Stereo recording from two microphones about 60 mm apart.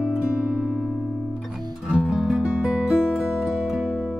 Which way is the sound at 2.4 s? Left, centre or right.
Centre.